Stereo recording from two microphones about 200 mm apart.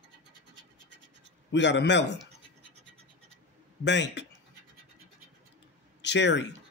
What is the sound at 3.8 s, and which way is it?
Speech, 60° left (ahead or behind).